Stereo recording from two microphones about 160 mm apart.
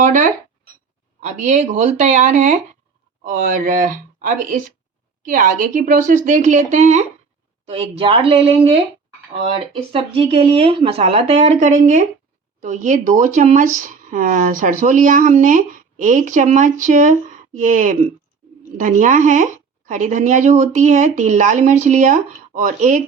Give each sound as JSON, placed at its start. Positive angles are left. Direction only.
{"t": 0.0, "sound": "a sound", "side_deg": -55}
{"t": 1.2, "sound": "speech", "side_deg": -45}
{"t": 7.7, "sound": "speech", "side_deg": -35}
{"t": 9.9, "sound": "speech", "side_deg": -35}